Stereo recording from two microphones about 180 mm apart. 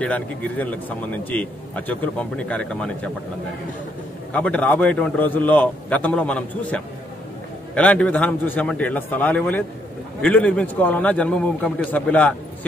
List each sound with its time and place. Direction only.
0.0 s a man's voice: 10° left (ahead or behind)
4.3 s a man's voice: 5° left (ahead or behind)